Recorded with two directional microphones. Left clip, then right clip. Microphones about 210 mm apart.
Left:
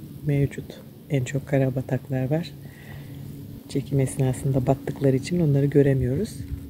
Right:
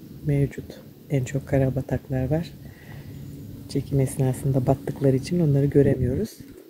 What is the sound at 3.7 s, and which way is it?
Speech, centre (ahead or behind).